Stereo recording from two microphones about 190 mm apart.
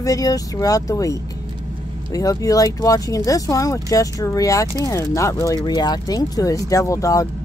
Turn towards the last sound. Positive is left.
turn(degrees=15)  # may be behind; listen again after turning